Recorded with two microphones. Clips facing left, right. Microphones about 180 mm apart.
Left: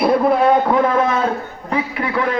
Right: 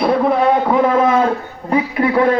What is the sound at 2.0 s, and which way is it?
Speech, 35° right (ahead or behind).